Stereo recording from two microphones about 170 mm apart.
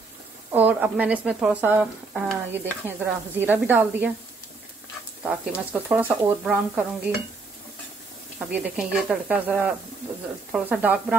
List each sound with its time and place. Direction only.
0.5 s speech: 10° right (ahead or behind)
5.2 s speech: 10° right (ahead or behind)
8.5 s speech: 10° right (ahead or behind)